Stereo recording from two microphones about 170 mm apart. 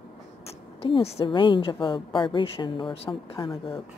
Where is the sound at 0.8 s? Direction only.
35° left (ahead or behind).